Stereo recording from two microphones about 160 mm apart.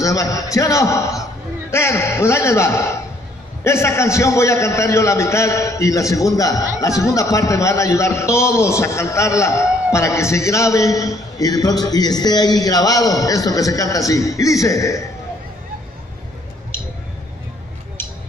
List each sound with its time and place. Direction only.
0.0 s a man's voice: 20° left (ahead or behind)